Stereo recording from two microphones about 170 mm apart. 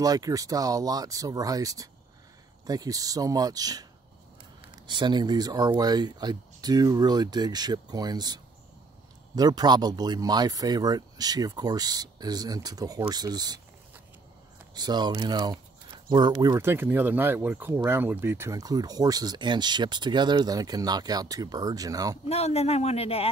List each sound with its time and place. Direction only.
0.0 s speech: 20° right (ahead or behind)
4.8 s speech: 25° right (ahead or behind)
14.7 s speech: 25° right (ahead or behind)
22.3 s a man's voice: 40° left (ahead or behind)